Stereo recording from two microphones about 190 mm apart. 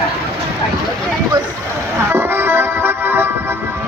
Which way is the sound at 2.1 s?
10° right (ahead or behind).